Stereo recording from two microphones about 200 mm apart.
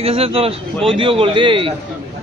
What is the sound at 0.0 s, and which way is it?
Speech, 30° right (ahead or behind).